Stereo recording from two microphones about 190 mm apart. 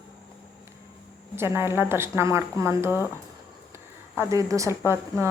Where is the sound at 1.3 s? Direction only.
15° right (ahead or behind).